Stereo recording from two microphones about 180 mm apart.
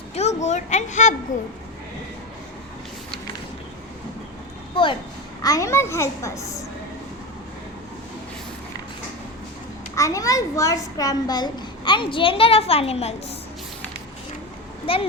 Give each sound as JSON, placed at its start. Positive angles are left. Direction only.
{"t": 0.1, "sound": "speech", "side_deg": 40}
{"t": 4.7, "sound": "a child's voice", "side_deg": 30}
{"t": 9.9, "sound": "a child's voice", "side_deg": 20}
{"t": 14.9, "sound": "a child's voice", "side_deg": 30}